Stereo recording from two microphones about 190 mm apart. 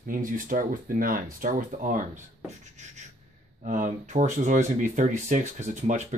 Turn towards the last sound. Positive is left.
turn(degrees=-40)  # may be behind; listen again after turning